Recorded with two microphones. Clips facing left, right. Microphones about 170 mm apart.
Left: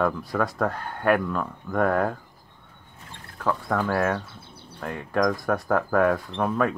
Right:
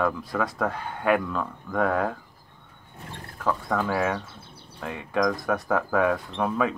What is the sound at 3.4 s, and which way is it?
Speech, centre (ahead or behind).